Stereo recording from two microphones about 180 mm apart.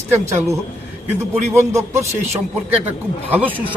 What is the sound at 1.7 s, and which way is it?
Speech, 15° right (ahead or behind).